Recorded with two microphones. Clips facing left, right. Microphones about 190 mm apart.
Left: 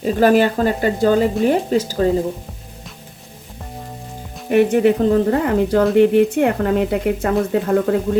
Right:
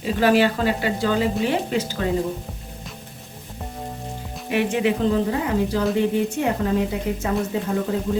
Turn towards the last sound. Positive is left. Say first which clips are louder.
# left 7 dB
turn(degrees=65)  # may be behind; listen again after turning